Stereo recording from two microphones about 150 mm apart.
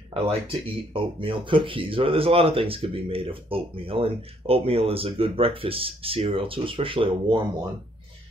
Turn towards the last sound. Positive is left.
turn(degrees=-35)  # may be behind; listen again after turning